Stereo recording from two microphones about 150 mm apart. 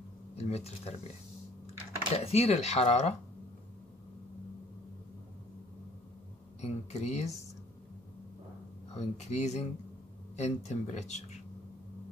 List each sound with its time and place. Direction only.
0.4 s speech: 45° left (ahead or behind)
2.1 s speech: 45° left (ahead or behind)
6.6 s speech: 45° left (ahead or behind)
8.9 s speech: 45° left (ahead or behind)